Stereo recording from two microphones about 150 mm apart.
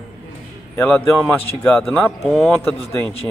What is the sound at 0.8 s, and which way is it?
A man's voice, 10° left (ahead or behind).